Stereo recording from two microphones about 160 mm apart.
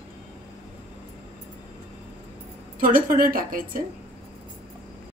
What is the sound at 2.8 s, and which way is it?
A woman's voice, 65° right (ahead or behind).